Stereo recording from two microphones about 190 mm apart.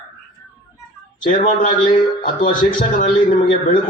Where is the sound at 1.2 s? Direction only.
45° left (ahead or behind).